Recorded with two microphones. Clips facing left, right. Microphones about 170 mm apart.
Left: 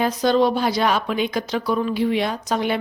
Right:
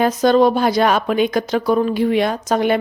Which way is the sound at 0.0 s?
50° right (ahead or behind).